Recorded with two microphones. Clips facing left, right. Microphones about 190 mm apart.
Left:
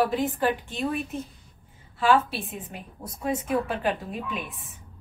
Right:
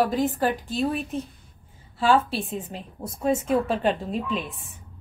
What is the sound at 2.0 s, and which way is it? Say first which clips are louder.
A woman's voice: right 1 dB; 30° right (ahead or behind).